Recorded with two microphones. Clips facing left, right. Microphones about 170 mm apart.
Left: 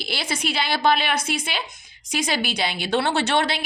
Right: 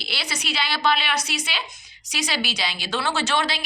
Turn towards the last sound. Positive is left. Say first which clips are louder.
# left 3 dB
turn(degrees=60)  # may be behind; listen again after turning